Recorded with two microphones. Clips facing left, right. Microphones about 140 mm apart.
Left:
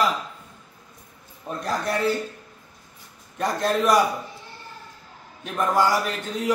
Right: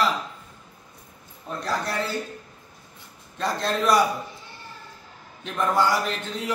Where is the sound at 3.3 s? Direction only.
15° left (ahead or behind).